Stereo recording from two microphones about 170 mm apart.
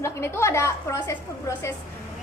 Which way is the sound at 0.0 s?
15° left (ahead or behind).